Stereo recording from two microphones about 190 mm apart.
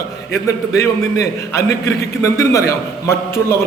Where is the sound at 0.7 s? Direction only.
15° left (ahead or behind).